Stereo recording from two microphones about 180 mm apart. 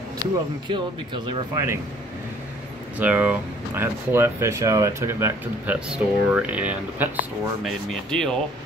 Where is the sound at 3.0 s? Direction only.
10° right (ahead or behind).